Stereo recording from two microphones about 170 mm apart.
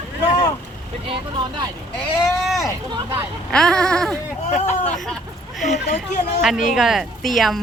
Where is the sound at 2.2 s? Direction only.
Centre (ahead or behind).